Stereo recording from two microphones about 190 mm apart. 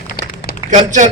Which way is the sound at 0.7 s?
40° right (ahead or behind).